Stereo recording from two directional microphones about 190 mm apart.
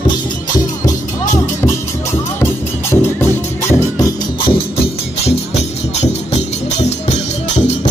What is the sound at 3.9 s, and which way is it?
Music, 20° left (ahead or behind).